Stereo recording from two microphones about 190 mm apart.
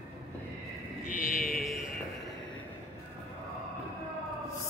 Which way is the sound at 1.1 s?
45° left (ahead or behind).